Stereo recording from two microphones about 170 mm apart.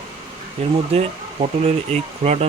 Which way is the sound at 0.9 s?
35° right (ahead or behind).